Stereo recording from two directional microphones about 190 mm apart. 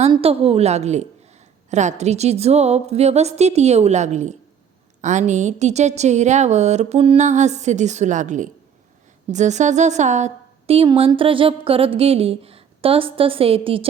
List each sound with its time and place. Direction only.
0.0 s a woman's voice: 30° right (ahead or behind)